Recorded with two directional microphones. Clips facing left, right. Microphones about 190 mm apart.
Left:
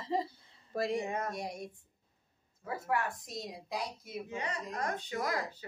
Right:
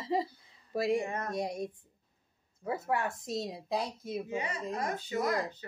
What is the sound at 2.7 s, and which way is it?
A woman's voice, 25° right (ahead or behind).